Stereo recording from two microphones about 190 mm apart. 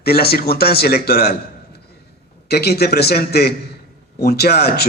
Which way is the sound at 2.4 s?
55° left (ahead or behind).